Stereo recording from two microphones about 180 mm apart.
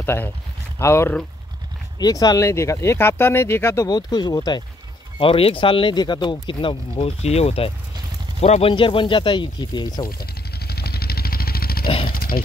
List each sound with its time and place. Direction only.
0.0 s speech: 15° left (ahead or behind)
10.0 s vehicle: 60° left (ahead or behind)
12.1 s a sound: 55° left (ahead or behind)